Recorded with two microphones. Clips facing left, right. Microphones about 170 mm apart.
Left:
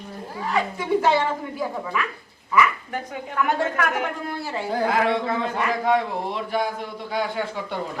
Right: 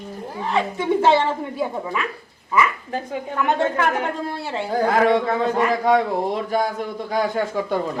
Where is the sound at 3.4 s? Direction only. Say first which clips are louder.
Right 2 dB; 30° right (ahead or behind).